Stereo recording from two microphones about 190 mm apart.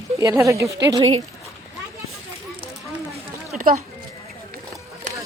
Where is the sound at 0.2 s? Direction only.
15° right (ahead or behind).